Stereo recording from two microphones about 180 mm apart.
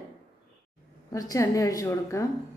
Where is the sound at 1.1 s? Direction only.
20° left (ahead or behind).